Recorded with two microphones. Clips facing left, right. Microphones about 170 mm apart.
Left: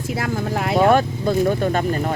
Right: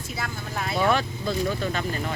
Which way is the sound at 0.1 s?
90° left.